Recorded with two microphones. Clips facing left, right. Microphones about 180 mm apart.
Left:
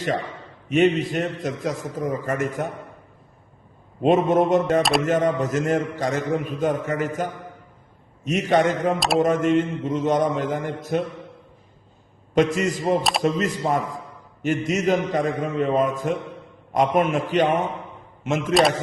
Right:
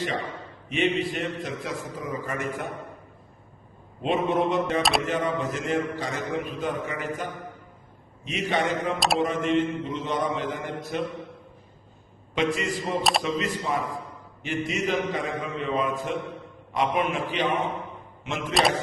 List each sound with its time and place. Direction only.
0.7 s a man's voice: 45° left (ahead or behind)
4.0 s a man's voice: 45° left (ahead or behind)
4.8 s single-lens reflex camera: centre (ahead or behind)
5.0 s a man's voice: 45° left (ahead or behind)
12.3 s a man's voice: 45° left (ahead or behind)
13.0 s single-lens reflex camera: centre (ahead or behind)
13.2 s a man's voice: 45° left (ahead or behind)